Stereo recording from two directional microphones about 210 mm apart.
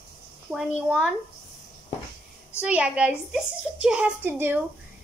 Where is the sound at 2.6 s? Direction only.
5° right (ahead or behind).